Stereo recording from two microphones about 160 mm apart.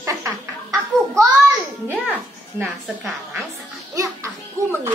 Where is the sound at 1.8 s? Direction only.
10° right (ahead or behind).